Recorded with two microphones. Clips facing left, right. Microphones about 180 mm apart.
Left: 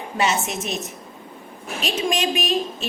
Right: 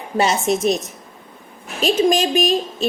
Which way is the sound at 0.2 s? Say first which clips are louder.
Right 6 dB; 35° right (ahead or behind).